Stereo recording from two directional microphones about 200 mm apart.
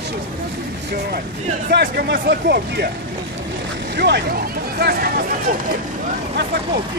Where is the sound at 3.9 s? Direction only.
55° right (ahead or behind).